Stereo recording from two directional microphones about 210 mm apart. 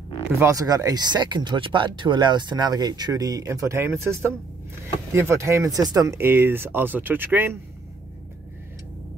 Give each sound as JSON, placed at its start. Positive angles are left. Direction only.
{"t": 0.4, "sound": "speech", "side_deg": -15}